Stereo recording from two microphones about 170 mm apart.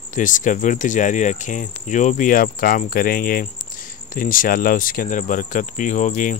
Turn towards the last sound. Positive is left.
turn(degrees=50)  # may be behind; listen again after turning